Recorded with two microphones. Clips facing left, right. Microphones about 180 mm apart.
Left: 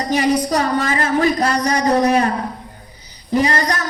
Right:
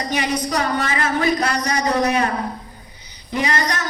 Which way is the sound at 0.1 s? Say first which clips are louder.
Left 7 dB; 35° left (ahead or behind).